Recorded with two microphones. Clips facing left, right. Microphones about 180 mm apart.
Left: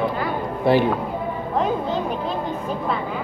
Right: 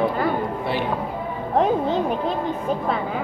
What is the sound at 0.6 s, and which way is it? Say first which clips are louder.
Speech: left 7 dB; 40° left (ahead or behind).